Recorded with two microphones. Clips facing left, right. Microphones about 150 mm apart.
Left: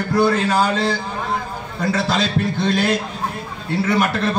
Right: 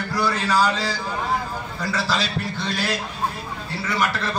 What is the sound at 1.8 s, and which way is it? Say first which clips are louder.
Speech: left 7 dB; 55° left (ahead or behind).